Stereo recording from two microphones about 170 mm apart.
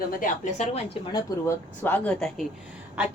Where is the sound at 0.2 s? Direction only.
45° left (ahead or behind).